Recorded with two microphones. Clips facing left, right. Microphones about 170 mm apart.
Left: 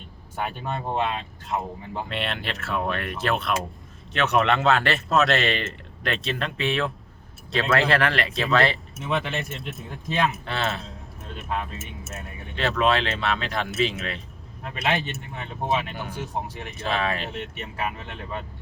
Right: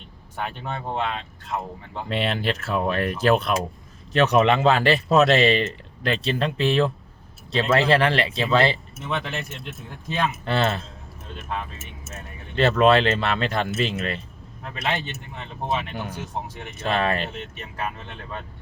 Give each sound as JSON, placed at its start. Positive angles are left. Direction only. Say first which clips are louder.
{"t": 0.3, "sound": "speech", "louder": "left 1 dB", "side_deg": 5}
{"t": 4.1, "sound": "speech", "louder": "right 5 dB", "side_deg": -35}
{"t": 4.4, "sound": "speech", "louder": "right 1 dB", "side_deg": 0}
{"t": 6.2, "sound": "speech", "louder": "right 5 dB", "side_deg": -35}
{"t": 6.6, "sound": "speech", "louder": "right 5 dB", "side_deg": 0}
{"t": 7.9, "sound": "speech", "louder": "right 3 dB", "side_deg": -30}
{"t": 8.3, "sound": "speech", "louder": "right 1 dB", "side_deg": 0}
{"t": 8.5, "sound": "speech", "louder": "right 2 dB", "side_deg": -30}
{"t": 9.0, "sound": "speech", "louder": "left 2 dB", "side_deg": 0}